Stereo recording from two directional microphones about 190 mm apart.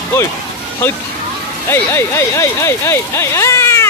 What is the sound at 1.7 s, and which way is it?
Speech, 15° left (ahead or behind).